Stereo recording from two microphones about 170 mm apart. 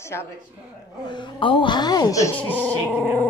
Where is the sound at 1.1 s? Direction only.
30° left (ahead or behind).